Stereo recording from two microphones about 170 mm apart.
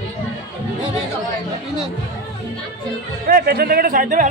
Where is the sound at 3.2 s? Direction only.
65° right (ahead or behind).